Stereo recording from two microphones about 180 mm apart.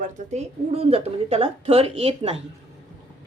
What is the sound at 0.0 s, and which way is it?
A woman's voice, 40° right (ahead or behind).